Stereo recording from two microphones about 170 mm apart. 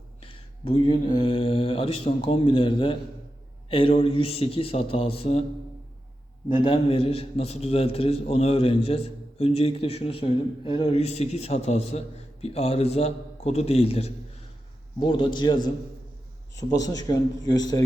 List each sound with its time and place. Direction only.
0.2 s a man's voice: 35° left (ahead or behind)
6.5 s a man's voice: 30° left (ahead or behind)